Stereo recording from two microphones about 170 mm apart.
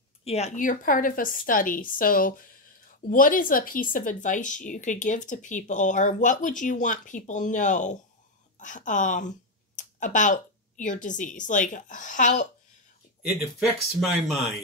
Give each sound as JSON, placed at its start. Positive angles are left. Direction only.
{"t": 0.2, "sound": "a woman's voice", "side_deg": 40}
{"t": 13.6, "sound": "speech", "side_deg": 0}